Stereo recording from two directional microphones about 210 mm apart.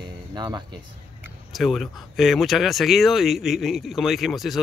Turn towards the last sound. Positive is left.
turn(degrees=0)  # may be behind; listen again after turning